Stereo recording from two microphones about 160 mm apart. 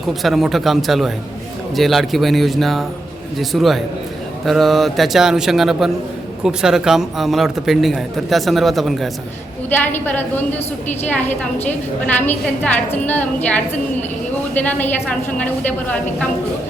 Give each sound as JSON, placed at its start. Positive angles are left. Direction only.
{"t": 0.1, "sound": "a man's voice", "side_deg": 0}
{"t": 9.6, "sound": "a woman's voice", "side_deg": 10}